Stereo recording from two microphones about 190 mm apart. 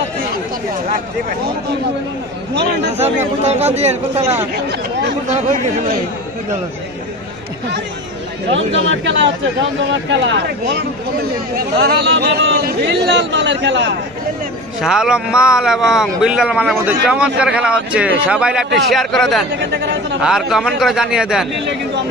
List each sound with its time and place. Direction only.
2.5 s speech: 65° right (ahead or behind)
3.0 s speech: 35° right (ahead or behind)
8.5 s speech: 80° right
14.8 s a man's voice: 5° right (ahead or behind)
19.6 s speech: 70° right (ahead or behind)
20.2 s a man's voice: centre (ahead or behind)